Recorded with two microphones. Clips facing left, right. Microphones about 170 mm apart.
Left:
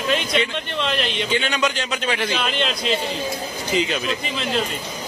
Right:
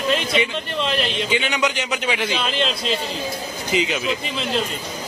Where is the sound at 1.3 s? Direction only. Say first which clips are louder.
Left 1 dB; 15° right (ahead or behind).